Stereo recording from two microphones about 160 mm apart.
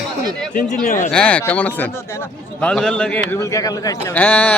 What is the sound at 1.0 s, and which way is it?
Speech, 5° left (ahead or behind).